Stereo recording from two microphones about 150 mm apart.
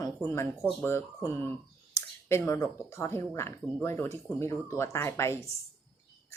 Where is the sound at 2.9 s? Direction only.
15° left (ahead or behind).